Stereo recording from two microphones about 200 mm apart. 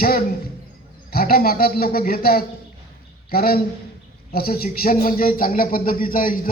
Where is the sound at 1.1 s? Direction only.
50° left (ahead or behind).